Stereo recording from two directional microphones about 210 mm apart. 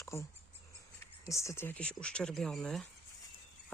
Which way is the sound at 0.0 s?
15° left (ahead or behind).